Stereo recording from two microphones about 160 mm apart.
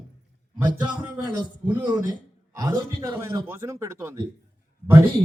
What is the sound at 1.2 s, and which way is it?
A man's voice, 25° right (ahead or behind).